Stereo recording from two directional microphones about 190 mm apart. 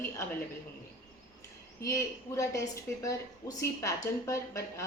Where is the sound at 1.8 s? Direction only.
15° left (ahead or behind).